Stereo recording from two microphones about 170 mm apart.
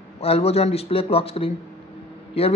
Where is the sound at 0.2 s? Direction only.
35° left (ahead or behind).